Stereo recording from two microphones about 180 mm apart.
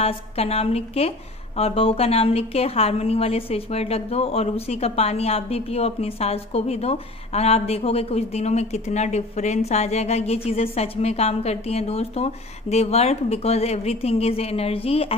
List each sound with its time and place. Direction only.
0.0 s a woman's voice: 35° left (ahead or behind)